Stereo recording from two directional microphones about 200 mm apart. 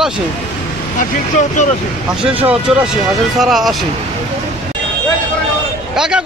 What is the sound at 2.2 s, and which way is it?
A man's voice, 5° right (ahead or behind).